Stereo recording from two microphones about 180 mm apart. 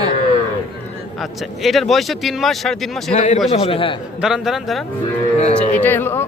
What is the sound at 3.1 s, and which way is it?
Speech, 40° left (ahead or behind).